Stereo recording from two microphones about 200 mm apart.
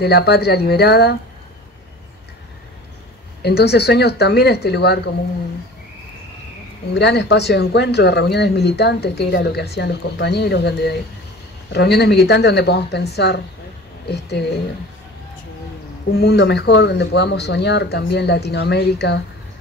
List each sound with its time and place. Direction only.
0.0 s speech: 55° left (ahead or behind)
3.4 s speech: 55° left (ahead or behind)
6.9 s speech: 60° left (ahead or behind)
16.1 s speech: 55° left (ahead or behind)